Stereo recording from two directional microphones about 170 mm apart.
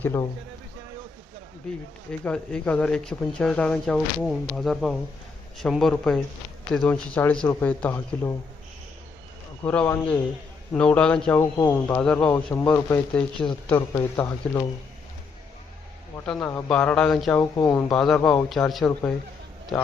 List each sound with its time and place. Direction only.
0.0 s speech: 15° left (ahead or behind)
2.2 s speech: 5° left (ahead or behind)
9.6 s speech: 10° left (ahead or behind)
16.2 s speech: 5° left (ahead or behind)
17.6 s a man's voice: 20° left (ahead or behind); by 19.9 s centre (ahead or behind)